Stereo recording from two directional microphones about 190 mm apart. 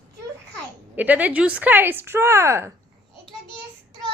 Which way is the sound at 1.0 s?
10° right (ahead or behind).